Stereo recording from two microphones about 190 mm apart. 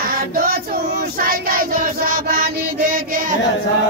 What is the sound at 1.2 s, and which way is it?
Chant, 50° right (ahead or behind).